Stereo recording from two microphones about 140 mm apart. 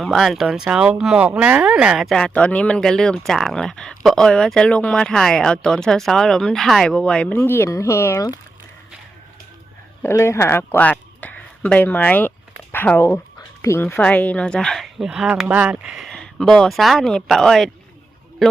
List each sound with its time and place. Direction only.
0.0 s speech: centre (ahead or behind); by 8.4 s 25° left (ahead or behind)
10.0 s speech: 20° left (ahead or behind)
13.8 s speech: 10° left (ahead or behind)